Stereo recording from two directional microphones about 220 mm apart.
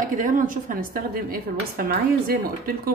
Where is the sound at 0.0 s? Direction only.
35° right (ahead or behind).